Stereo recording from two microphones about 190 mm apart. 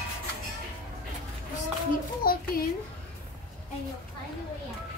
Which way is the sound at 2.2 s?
50° left (ahead or behind).